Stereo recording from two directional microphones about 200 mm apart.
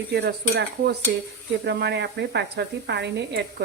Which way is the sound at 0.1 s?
55° right (ahead or behind).